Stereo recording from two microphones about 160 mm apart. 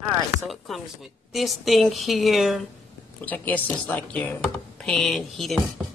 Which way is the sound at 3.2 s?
10° left (ahead or behind).